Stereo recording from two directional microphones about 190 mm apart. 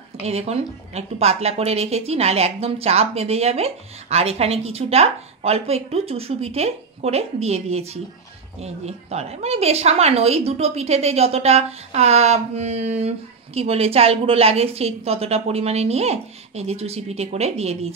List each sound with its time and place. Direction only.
0.2 s a woman's voice: 35° right (ahead or behind)